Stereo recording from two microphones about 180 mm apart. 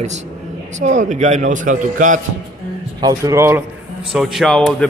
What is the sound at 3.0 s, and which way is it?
Speech, 15° right (ahead or behind).